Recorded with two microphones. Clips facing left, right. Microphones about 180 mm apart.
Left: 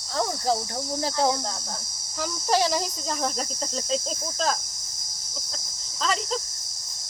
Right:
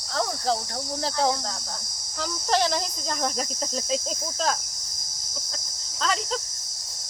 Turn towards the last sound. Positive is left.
turn(degrees=0)  # may be behind; listen again after turning